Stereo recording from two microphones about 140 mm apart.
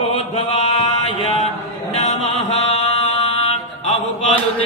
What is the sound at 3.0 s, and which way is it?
Mantra, 50° left (ahead or behind).